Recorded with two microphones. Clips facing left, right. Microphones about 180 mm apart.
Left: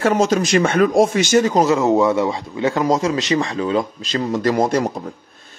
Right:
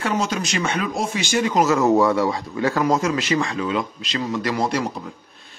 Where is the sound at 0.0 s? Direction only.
45° left (ahead or behind).